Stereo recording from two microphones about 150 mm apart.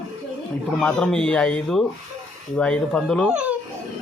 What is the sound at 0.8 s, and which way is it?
Speech, 5° left (ahead or behind).